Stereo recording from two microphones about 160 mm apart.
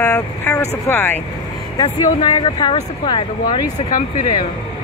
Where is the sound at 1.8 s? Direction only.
25° left (ahead or behind).